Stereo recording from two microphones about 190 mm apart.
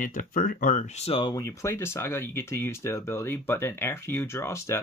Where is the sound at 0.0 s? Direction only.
45° left (ahead or behind).